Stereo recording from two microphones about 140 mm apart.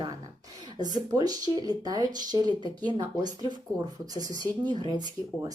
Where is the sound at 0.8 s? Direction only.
30° right (ahead or behind).